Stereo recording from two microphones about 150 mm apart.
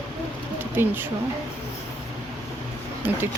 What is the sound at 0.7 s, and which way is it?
Speech, 15° right (ahead or behind).